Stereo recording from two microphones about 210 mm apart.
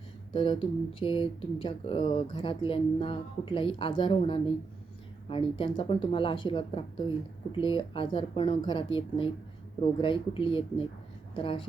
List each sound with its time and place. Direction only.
0.3 s speech: 25° left (ahead or behind)